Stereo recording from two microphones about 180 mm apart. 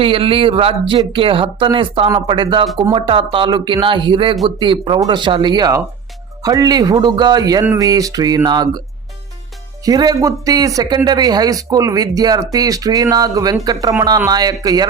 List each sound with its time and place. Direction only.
0.0 s speech: 30° right (ahead or behind)
9.8 s speech: 20° right (ahead or behind)